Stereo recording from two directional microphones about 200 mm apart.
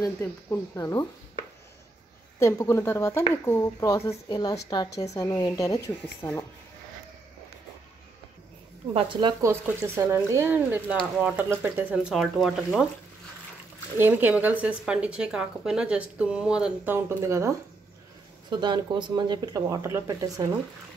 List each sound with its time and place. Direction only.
0.0 s speech: 15° left (ahead or behind)
2.3 s speech: 15° left (ahead or behind)
8.9 s speech: 25° right (ahead or behind)
9.4 s speech: 15° right (ahead or behind)
13.9 s speech: 10° right (ahead or behind)